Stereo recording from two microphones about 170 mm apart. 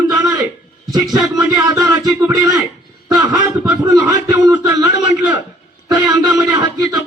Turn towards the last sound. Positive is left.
turn(degrees=-25)  # may be behind; listen again after turning